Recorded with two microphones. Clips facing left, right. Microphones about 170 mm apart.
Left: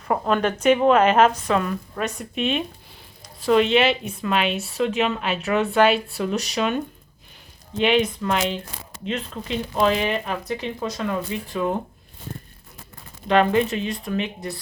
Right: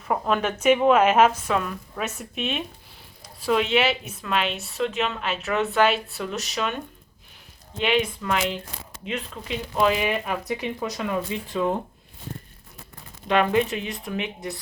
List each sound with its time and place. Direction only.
0.1 s a woman's voice: 5° right (ahead or behind)
7.8 s a woman's voice: 5° right (ahead or behind); by 11.6 s 20° right (ahead or behind)
13.2 s speech: 15° right (ahead or behind)